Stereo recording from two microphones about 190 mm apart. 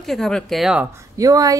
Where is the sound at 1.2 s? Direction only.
20° right (ahead or behind).